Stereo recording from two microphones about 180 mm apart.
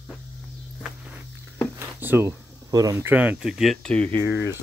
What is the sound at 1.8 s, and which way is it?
Speech, 10° right (ahead or behind).